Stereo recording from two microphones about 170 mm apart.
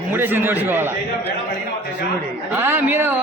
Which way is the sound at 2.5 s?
10° right (ahead or behind).